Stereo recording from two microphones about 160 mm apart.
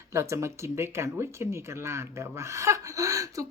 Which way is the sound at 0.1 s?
20° right (ahead or behind).